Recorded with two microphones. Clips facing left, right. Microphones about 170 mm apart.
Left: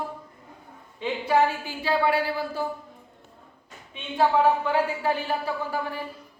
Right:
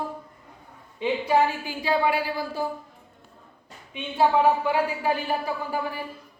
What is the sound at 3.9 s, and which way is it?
A woman's voice, 15° right (ahead or behind).